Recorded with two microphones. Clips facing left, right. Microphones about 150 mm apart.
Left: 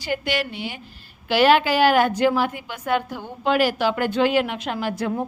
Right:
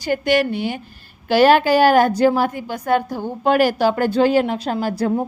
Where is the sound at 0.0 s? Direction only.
45° right (ahead or behind).